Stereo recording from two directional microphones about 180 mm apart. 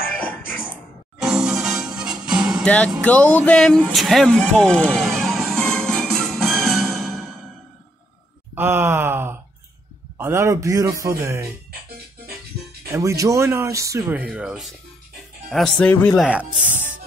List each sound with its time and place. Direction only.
0.2 s music: 10° left (ahead or behind)
1.2 s music: 5° right (ahead or behind)
2.6 s music: 5° left (ahead or behind)
8.5 s groan: 10° right (ahead or behind)
10.1 s speech: 15° right (ahead or behind)
12.9 s speech: 15° right (ahead or behind); by 16.2 s 10° left (ahead or behind)
16.2 s speech: 5° right (ahead or behind)